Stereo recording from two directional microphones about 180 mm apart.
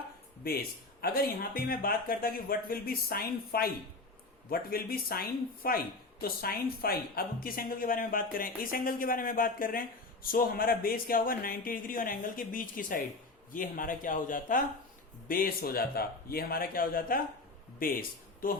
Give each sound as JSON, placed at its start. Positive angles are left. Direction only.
{"t": 1.0, "sound": "speech", "side_deg": 55}